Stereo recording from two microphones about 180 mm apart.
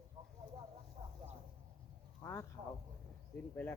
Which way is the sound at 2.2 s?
15° left (ahead or behind).